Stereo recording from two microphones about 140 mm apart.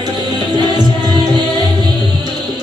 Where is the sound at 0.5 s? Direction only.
30° right (ahead or behind).